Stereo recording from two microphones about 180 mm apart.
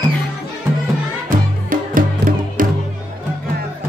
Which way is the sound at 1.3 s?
50° right (ahead or behind).